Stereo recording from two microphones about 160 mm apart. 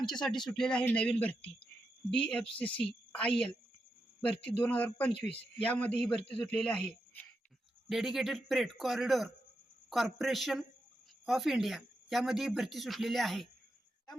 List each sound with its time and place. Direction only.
0.1 s a man's voice: 5° left (ahead or behind)